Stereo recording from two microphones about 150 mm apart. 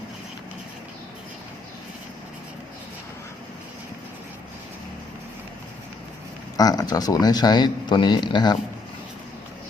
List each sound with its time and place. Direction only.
6.6 s speech: 25° left (ahead or behind)